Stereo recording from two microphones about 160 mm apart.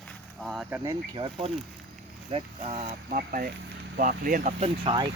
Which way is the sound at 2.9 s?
60° right (ahead or behind).